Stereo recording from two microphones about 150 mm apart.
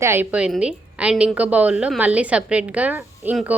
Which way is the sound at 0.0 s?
15° right (ahead or behind).